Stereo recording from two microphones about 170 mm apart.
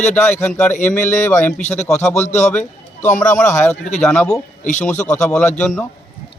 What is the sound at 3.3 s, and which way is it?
A man's voice, 15° left (ahead or behind).